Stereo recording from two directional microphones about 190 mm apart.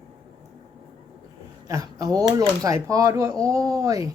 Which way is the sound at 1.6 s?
20° right (ahead or behind).